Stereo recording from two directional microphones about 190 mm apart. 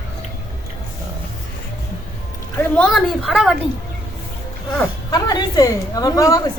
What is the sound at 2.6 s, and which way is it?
Speech, 5° left (ahead or behind).